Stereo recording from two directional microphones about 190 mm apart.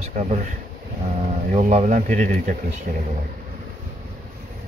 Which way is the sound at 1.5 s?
35° right (ahead or behind).